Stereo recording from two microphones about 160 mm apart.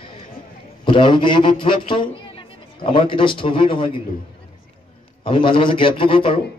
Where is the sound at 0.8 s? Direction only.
30° left (ahead or behind).